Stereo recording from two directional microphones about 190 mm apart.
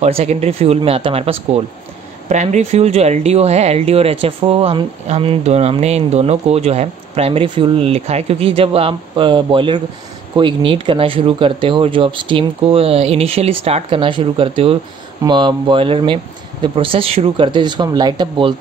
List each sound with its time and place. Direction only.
0.0 s speech: 35° right (ahead or behind)